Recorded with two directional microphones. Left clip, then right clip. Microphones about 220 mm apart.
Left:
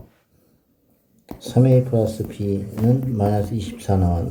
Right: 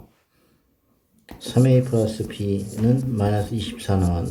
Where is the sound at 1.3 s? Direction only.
10° left (ahead or behind).